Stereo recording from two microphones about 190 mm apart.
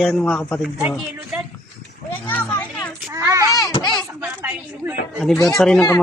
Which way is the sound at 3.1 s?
15° right (ahead or behind).